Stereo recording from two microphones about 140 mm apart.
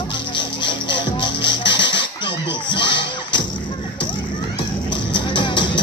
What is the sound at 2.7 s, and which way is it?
Music, 35° left (ahead or behind).